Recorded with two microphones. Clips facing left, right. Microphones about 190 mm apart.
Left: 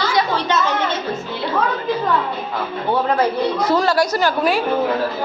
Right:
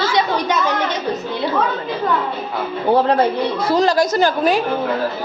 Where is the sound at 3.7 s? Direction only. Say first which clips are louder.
Right 3 dB; 20° right (ahead or behind).